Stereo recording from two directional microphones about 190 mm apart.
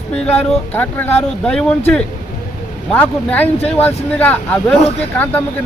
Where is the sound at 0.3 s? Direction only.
10° left (ahead or behind).